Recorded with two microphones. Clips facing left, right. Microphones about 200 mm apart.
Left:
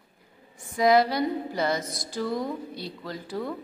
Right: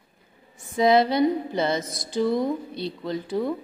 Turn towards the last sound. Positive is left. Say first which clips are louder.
# right 6 dB
turn(degrees=-20)  # may be behind; listen again after turning